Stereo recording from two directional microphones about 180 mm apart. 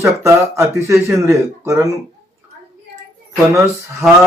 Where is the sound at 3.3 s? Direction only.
15° right (ahead or behind).